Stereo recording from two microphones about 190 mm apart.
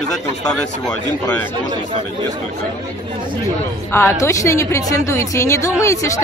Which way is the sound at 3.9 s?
15° left (ahead or behind).